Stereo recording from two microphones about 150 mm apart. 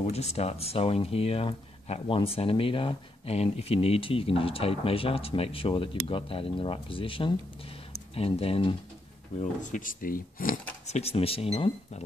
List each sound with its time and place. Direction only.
0.0 s speech: 45° left (ahead or behind)
9.4 s speech: 55° left (ahead or behind)
10.9 s speech: 45° left (ahead or behind)